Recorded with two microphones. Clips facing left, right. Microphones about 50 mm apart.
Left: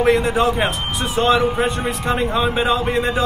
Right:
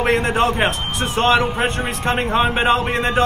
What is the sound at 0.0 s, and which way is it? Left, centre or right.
Speech, right.